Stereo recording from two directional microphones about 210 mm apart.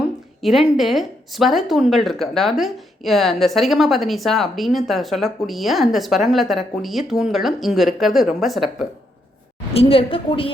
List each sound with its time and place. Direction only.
0.0 s a woman's voice: centre (ahead or behind)
9.7 s a woman's voice: 25° left (ahead or behind)